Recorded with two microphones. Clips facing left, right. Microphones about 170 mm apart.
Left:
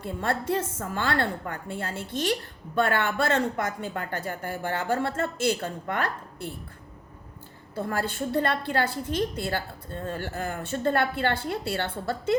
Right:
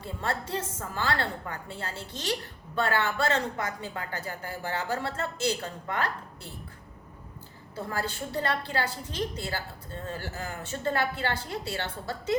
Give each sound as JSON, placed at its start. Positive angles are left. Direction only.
{"t": 0.0, "sound": "a woman's voice", "side_deg": 55}
{"t": 7.9, "sound": "a woman's voice", "side_deg": 55}